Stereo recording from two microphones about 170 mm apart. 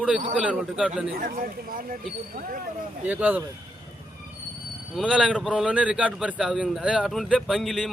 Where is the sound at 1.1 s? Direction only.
55° right (ahead or behind).